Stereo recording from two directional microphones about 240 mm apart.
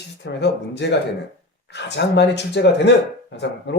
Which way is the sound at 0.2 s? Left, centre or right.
Left.